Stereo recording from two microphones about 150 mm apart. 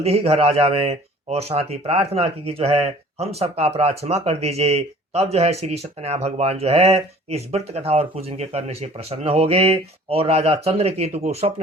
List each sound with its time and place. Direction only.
0.0 s speech: 40° right (ahead or behind)